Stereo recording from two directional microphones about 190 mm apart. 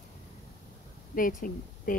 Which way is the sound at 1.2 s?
45° left (ahead or behind).